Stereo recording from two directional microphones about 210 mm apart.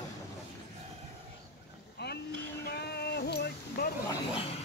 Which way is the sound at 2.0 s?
55° left (ahead or behind).